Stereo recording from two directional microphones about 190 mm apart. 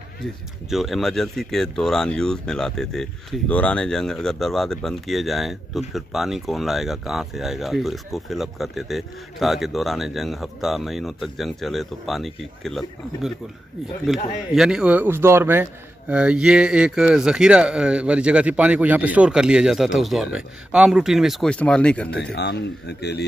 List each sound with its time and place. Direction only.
0.2 s speech: centre (ahead or behind)
22.1 s speech: 60° left (ahead or behind)